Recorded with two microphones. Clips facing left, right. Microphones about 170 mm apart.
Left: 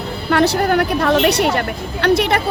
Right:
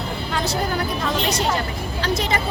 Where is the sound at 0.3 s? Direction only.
65° left (ahead or behind).